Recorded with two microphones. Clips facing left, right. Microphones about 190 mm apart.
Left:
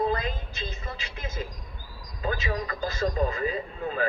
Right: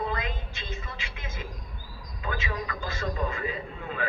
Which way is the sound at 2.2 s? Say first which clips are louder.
Left 4 dB; 40° left (ahead or behind).